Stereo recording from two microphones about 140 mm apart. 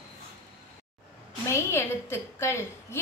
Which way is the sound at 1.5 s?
20° left (ahead or behind).